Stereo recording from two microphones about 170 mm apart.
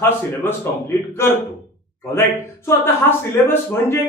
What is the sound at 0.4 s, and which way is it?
A man's voice, 15° left (ahead or behind).